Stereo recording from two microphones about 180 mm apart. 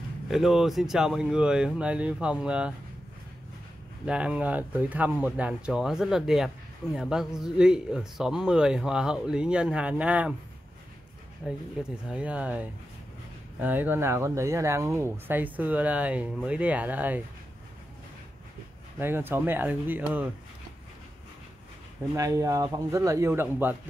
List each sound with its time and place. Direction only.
0.3 s speech: centre (ahead or behind)
4.0 s speech: 5° right (ahead or behind)
11.4 s speech: 5° right (ahead or behind)
18.9 s speech: 10° right (ahead or behind)
22.1 s speech: 20° right (ahead or behind)